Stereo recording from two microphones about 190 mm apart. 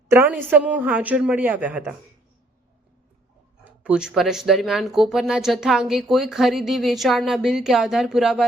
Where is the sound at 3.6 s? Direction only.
5° right (ahead or behind).